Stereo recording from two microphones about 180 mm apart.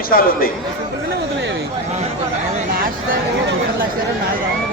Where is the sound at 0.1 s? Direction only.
55° left (ahead or behind).